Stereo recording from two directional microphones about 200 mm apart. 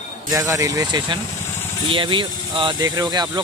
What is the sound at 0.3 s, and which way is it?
Speech, 15° right (ahead or behind).